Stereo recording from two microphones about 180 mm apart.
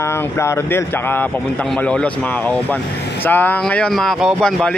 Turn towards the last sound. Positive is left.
turn(degrees=0)  # may be behind; listen again after turning